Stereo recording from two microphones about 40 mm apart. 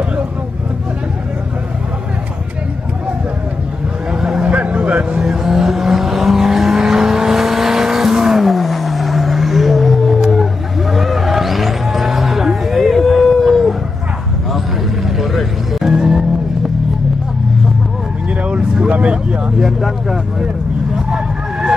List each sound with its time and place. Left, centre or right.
4.1 s vehicle: centre
4.4 s a sound: right
5.2 s vehicle: centre
12.6 s a sound: centre
15.1 s vehicle: centre
18.4 s vehicle: right
19.6 s vehicle: centre
20.9 s vehicle: centre